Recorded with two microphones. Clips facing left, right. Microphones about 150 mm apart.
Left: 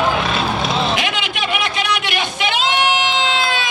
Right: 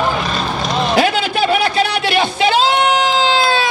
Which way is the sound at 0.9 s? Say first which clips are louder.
Right 8 dB; 35° right (ahead or behind).